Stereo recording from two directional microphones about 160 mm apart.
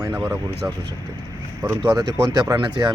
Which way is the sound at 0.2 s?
20° right (ahead or behind).